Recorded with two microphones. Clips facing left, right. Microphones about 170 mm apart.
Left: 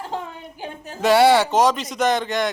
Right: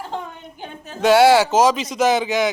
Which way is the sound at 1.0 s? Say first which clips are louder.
Right 2 dB; centre (ahead or behind).